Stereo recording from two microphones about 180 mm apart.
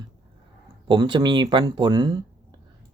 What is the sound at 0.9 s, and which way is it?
Speech, 25° right (ahead or behind).